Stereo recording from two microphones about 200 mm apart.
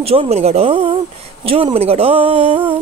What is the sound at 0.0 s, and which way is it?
Speech, 30° right (ahead or behind).